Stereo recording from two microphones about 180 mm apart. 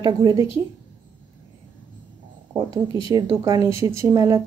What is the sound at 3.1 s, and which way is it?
Speech, 20° right (ahead or behind).